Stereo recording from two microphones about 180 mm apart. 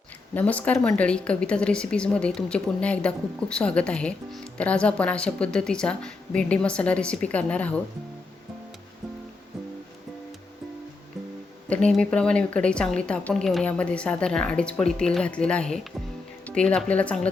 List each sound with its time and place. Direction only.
0.3 s a woman's voice: 10° left (ahead or behind)
11.7 s a woman's voice: 5° left (ahead or behind)